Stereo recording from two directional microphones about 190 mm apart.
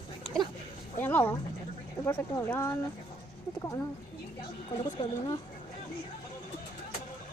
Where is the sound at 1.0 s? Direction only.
10° left (ahead or behind).